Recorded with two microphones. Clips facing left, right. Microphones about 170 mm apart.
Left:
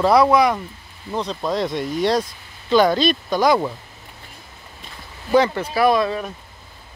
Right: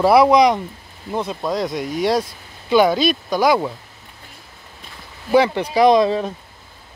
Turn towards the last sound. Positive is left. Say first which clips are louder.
# right 4 dB
turn(degrees=-25)  # may be behind; listen again after turning